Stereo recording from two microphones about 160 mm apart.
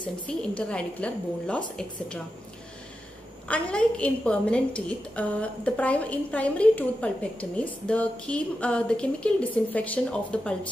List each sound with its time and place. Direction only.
0.6 s a woman's voice: 5° left (ahead or behind)
3.4 s a woman's voice: 5° left (ahead or behind)